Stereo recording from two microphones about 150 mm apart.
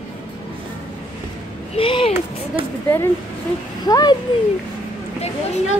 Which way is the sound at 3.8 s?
25° left (ahead or behind).